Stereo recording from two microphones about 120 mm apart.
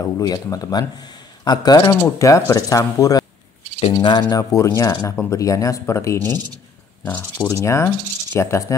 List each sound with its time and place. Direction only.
0.0 s speech: 30° left (ahead or behind)
2.0 s speech: 25° left (ahead or behind)
6.3 s a sound: 35° right (ahead or behind)
7.1 s speech: 15° left (ahead or behind)